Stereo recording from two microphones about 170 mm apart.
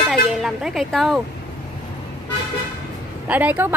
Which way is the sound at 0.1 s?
Centre (ahead or behind).